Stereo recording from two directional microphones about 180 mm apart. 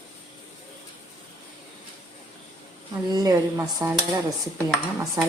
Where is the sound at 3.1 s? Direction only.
20° right (ahead or behind).